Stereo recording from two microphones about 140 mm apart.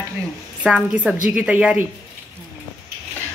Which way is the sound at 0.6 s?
10° right (ahead or behind).